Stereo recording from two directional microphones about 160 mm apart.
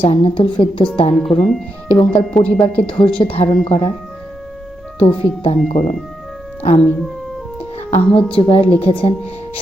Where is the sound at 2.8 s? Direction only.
30° left (ahead or behind).